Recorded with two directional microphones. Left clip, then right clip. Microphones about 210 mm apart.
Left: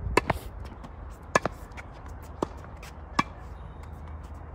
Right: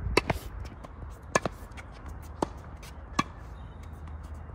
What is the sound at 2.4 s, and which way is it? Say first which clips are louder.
Basketball bounce: even; 40° right (ahead or behind).